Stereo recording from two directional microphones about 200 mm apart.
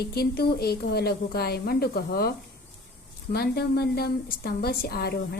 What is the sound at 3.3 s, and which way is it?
Speech, 50° left (ahead or behind).